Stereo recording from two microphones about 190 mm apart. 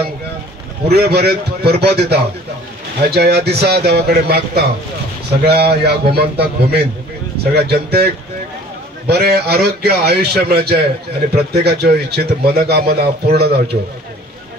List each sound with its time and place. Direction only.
0.8 s a man's voice: 55° right (ahead or behind)